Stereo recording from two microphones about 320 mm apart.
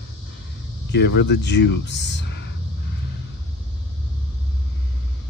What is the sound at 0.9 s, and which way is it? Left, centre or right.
Speech, left.